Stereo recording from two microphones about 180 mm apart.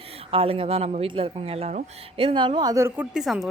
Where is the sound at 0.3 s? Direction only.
30° right (ahead or behind); by 3.1 s 15° right (ahead or behind).